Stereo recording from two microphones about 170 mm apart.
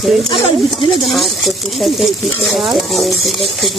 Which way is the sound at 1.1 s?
Centre (ahead or behind).